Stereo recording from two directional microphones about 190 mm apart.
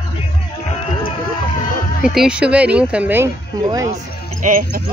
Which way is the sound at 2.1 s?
5° right (ahead or behind).